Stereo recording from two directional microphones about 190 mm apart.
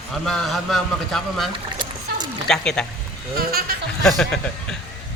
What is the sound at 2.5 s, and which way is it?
Speech, 5° left (ahead or behind).